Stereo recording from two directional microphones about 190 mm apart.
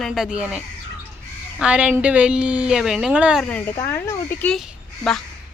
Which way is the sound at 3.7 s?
15° left (ahead or behind).